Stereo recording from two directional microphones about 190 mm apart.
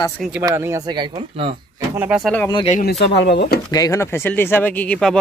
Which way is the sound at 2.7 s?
55° left (ahead or behind).